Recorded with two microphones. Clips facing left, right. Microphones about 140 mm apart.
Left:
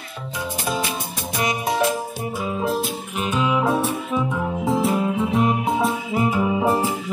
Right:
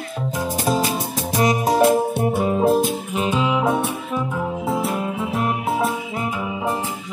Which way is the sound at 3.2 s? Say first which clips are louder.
Right 1 dB; 20° right (ahead or behind).